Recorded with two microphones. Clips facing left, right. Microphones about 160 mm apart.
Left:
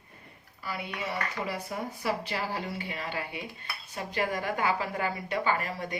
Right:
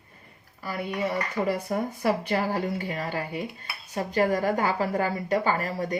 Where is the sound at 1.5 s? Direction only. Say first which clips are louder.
Right 7 dB; 50° right (ahead or behind).